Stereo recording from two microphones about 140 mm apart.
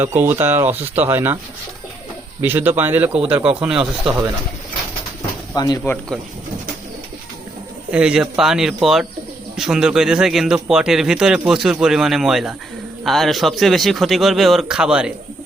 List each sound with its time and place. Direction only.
0.0 s speech: 15° right (ahead or behind)
2.4 s speech: 15° right (ahead or behind)
5.5 s speech: 30° left (ahead or behind)
5.8 s speech: 10° left (ahead or behind)
7.9 s a man's voice: 5° right (ahead or behind)